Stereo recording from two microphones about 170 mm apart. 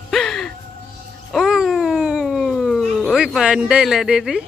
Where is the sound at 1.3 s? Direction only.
Centre (ahead or behind).